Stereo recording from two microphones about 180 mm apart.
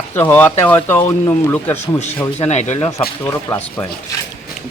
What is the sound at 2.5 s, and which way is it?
Speech, 40° left (ahead or behind).